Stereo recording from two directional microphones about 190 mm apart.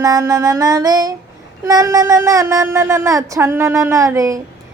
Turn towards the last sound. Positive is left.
turn(degrees=-15)  # may be behind; listen again after turning